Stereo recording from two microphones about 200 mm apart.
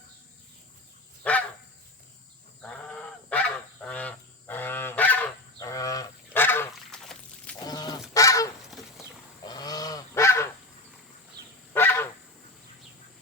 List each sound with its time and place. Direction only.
1.2 s dog: 5° left (ahead or behind)
2.6 s goose: 5° left (ahead or behind)
7.6 s goose: 20° left (ahead or behind)
11.7 s goose: 10° left (ahead or behind)